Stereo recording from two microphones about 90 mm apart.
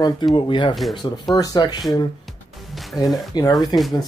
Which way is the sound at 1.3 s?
50° left (ahead or behind).